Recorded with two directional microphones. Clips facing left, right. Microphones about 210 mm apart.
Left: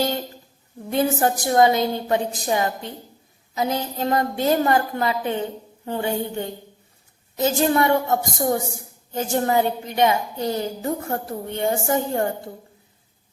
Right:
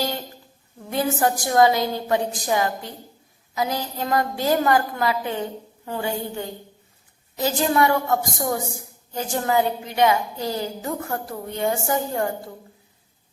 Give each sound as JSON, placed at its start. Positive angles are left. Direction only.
{"t": 0.9, "sound": "a woman's voice", "side_deg": 25}
{"t": 7.3, "sound": "a woman's voice", "side_deg": 25}